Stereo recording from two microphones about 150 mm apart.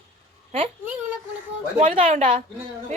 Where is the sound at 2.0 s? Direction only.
60° right (ahead or behind).